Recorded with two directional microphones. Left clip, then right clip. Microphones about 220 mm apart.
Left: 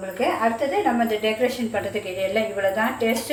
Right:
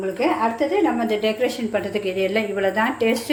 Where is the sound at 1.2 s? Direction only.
50° right (ahead or behind).